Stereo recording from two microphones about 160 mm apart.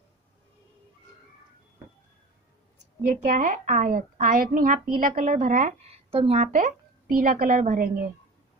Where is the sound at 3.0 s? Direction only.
50° right (ahead or behind).